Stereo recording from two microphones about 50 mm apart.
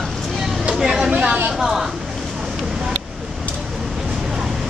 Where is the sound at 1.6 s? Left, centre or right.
Centre.